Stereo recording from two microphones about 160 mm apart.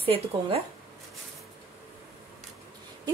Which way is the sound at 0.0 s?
35° right (ahead or behind).